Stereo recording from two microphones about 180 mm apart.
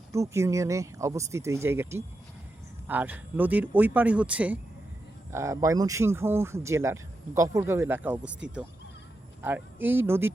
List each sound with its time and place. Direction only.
0.1 s speech: 15° right (ahead or behind)
9.4 s speech: 10° right (ahead or behind)